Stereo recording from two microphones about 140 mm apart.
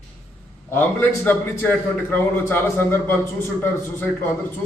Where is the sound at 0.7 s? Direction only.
15° left (ahead or behind).